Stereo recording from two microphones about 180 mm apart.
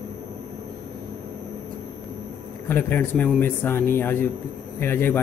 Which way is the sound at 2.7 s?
10° left (ahead or behind).